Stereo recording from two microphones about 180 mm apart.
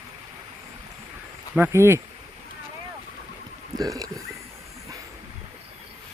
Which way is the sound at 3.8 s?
20° right (ahead or behind).